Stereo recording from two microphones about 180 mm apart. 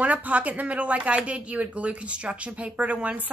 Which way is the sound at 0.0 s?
10° right (ahead or behind).